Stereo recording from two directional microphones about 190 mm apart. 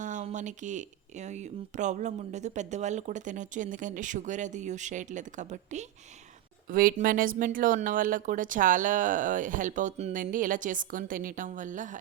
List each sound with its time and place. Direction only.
0.0 s speech: 40° right (ahead or behind)